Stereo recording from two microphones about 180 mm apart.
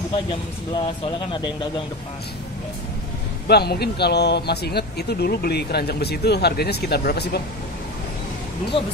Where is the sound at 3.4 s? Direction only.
65° left (ahead or behind).